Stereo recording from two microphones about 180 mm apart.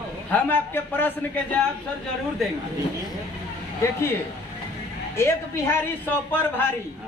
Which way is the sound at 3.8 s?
15° left (ahead or behind).